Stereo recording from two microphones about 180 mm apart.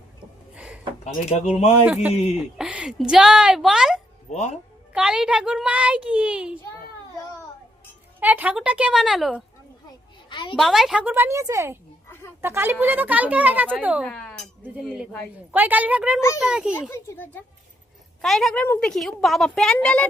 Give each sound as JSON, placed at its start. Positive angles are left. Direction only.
{"t": 0.5, "sound": "a sound", "side_deg": -5}
{"t": 1.0, "sound": "speech", "side_deg": 40}
{"t": 1.8, "sound": "a woman's voice", "side_deg": -5}
{"t": 4.3, "sound": "speech", "side_deg": 40}
{"t": 4.9, "sound": "a woman's voice", "side_deg": -5}
{"t": 8.2, "sound": "speech", "side_deg": -10}
{"t": 10.2, "sound": "a sound", "side_deg": 25}
{"t": 10.6, "sound": "speech", "side_deg": 0}
{"t": 14.1, "sound": "speech", "side_deg": 5}
{"t": 15.5, "sound": "a woman's voice", "side_deg": -10}
{"t": 16.9, "sound": "a woman's voice", "side_deg": 10}